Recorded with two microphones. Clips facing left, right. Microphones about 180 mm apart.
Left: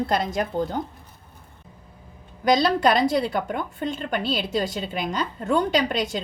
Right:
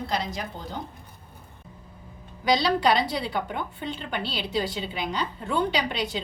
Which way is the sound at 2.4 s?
50° left (ahead or behind).